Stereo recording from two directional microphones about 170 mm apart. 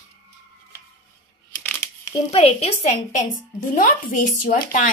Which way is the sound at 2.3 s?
40° left (ahead or behind).